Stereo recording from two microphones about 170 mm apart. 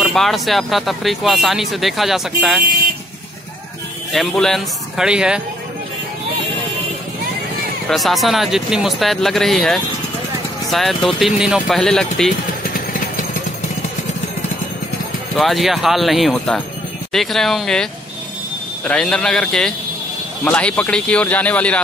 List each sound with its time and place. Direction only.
0.0 s speech: centre (ahead or behind)
4.1 s speech: centre (ahead or behind)
7.9 s speech: centre (ahead or behind)
12.6 s vehicle: 55° left (ahead or behind)
15.3 s speech: centre (ahead or behind)
18.9 s speech: 5° left (ahead or behind)